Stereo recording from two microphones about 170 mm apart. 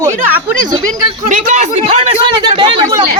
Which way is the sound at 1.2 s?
45° right (ahead or behind).